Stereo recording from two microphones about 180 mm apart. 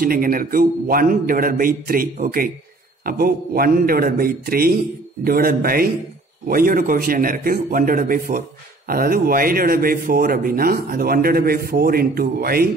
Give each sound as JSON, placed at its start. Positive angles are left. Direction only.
{"t": 0.0, "sound": "a man's voice", "side_deg": -55}